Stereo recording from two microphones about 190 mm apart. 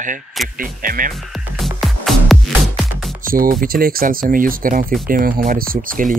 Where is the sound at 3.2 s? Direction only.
50° right (ahead or behind).